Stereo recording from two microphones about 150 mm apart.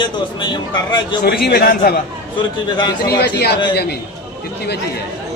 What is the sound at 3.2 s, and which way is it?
Speech, 90° left.